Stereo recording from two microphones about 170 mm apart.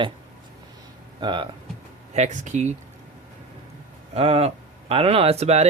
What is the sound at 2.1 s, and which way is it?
Speech, 45° right (ahead or behind).